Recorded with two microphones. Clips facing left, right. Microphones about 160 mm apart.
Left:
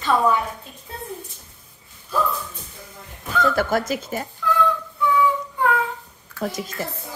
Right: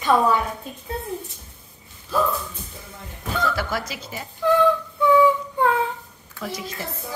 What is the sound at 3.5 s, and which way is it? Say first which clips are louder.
Speech: left 6 dB; 50° left (ahead or behind).